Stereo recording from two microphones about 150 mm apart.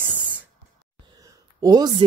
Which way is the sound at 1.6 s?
25° right (ahead or behind).